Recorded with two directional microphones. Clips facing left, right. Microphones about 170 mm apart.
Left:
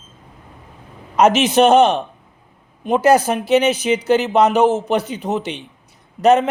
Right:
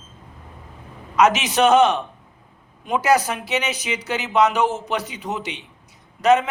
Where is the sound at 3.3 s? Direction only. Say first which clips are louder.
Left 10 dB; 55° left (ahead or behind).